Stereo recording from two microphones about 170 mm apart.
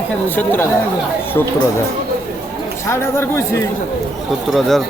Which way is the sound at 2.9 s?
15° left (ahead or behind).